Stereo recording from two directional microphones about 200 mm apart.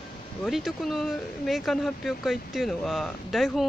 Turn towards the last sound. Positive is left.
turn(degrees=0)  # may be behind; listen again after turning